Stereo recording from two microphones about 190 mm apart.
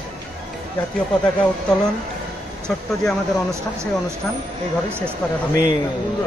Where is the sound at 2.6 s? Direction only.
5° left (ahead or behind).